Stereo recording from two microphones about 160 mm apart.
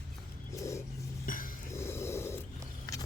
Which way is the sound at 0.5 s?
20° left (ahead or behind).